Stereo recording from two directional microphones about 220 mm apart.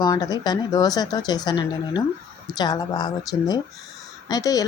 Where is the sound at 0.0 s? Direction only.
15° left (ahead or behind).